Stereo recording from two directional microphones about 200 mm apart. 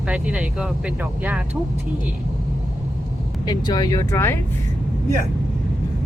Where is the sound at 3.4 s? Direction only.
20° left (ahead or behind).